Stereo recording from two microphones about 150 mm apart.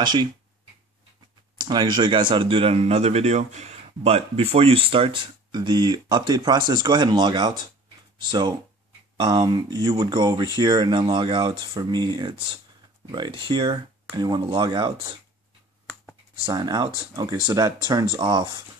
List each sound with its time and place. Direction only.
0.0 s speech: 30° right (ahead or behind)
1.6 s speech: 30° right (ahead or behind)
16.3 s speech: 30° right (ahead or behind)